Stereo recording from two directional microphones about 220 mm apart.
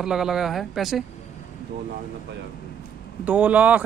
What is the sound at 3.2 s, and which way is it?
Speech, 5° right (ahead or behind).